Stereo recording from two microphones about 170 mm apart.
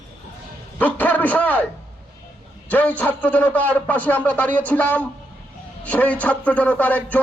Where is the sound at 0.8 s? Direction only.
10° left (ahead or behind).